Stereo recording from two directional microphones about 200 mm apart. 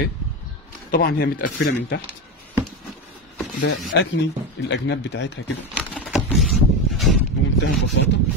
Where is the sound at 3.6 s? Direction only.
65° left (ahead or behind).